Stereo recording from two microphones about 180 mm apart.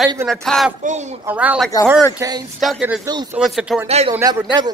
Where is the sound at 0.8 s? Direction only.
40° right (ahead or behind).